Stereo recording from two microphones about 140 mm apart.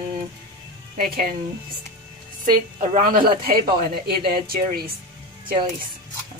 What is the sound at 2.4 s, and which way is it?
A woman's voice, 75° right (ahead or behind).